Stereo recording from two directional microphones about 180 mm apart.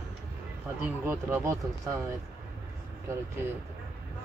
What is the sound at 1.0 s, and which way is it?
Speech, 15° right (ahead or behind).